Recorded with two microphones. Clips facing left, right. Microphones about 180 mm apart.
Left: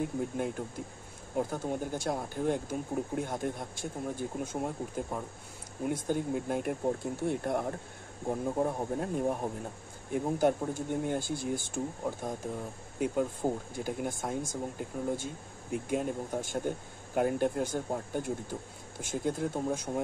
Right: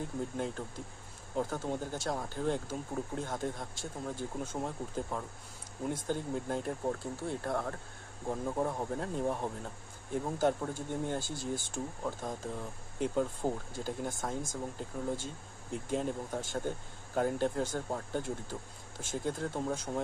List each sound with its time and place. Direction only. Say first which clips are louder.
0.0 s speech: left 4 dB; 15° left (ahead or behind)